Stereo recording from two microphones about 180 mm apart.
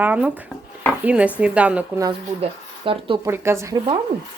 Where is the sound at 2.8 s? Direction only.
30° right (ahead or behind).